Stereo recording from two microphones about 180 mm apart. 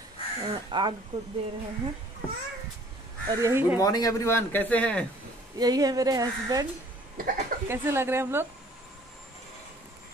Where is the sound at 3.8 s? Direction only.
20° left (ahead or behind).